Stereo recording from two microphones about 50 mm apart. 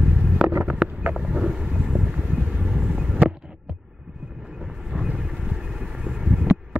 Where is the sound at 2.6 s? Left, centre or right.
Centre.